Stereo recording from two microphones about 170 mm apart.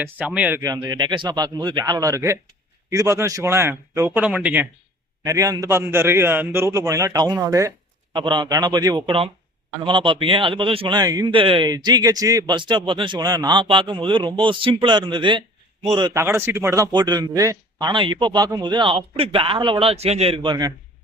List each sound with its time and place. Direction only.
0.0 s a man's voice: 10° right (ahead or behind)
0.9 s a man's voice: 25° right (ahead or behind); by 4.7 s 10° right (ahead or behind)
5.2 s a man's voice: 20° right (ahead or behind)